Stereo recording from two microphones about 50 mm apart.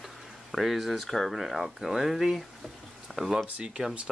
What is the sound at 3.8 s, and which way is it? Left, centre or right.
Speech, centre.